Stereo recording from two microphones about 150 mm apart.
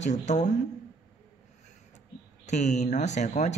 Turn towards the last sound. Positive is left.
turn(degrees=50)  # may be behind; listen again after turning